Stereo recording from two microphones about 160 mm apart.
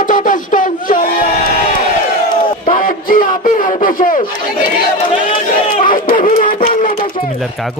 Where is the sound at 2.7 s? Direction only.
55° left (ahead or behind).